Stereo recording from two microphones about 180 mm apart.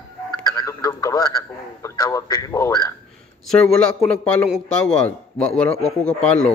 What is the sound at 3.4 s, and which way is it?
A man's voice, 5° left (ahead or behind).